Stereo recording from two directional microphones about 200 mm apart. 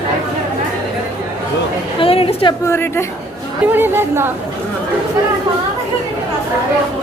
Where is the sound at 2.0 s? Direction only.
30° left (ahead or behind).